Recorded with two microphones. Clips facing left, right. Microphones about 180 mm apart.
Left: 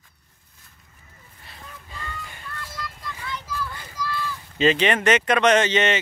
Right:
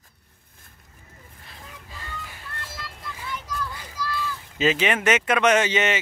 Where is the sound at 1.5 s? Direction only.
5° right (ahead or behind).